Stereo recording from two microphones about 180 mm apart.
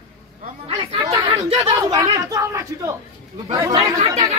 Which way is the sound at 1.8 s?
20° right (ahead or behind).